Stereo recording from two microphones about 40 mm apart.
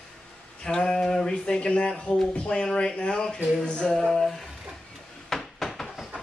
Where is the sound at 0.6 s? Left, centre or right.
Left.